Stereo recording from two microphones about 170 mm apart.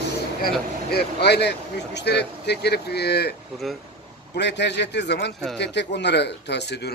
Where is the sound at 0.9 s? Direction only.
75° left (ahead or behind).